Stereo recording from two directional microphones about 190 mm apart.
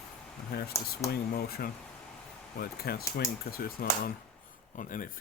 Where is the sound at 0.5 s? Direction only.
55° left (ahead or behind).